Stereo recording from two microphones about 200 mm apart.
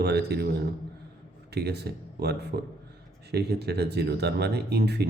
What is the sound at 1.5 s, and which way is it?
Speech, 55° right (ahead or behind).